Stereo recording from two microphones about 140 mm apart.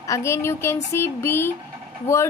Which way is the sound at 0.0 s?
20° left (ahead or behind).